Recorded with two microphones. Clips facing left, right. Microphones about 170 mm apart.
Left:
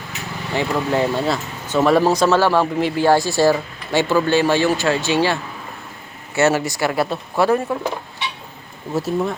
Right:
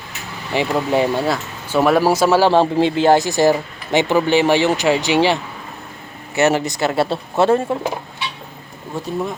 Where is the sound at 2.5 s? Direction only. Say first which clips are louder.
Right 3 dB; 25° right (ahead or behind).